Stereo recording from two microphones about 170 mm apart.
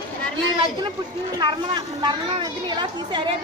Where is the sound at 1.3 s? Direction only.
25° right (ahead or behind).